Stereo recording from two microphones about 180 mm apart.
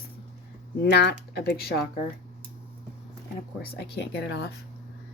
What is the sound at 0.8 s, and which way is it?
Speech, 70° left (ahead or behind).